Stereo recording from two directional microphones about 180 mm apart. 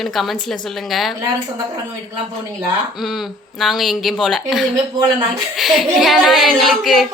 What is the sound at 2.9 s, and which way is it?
A child's voice, centre (ahead or behind).